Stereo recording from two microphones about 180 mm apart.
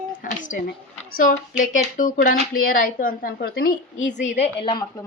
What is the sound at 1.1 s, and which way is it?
Speech, 50° left (ahead or behind).